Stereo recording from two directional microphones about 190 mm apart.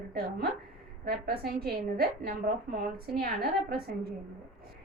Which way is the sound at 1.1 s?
55° right (ahead or behind).